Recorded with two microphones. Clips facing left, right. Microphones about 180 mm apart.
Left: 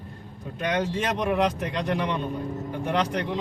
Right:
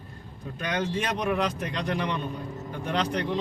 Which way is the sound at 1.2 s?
20° left (ahead or behind).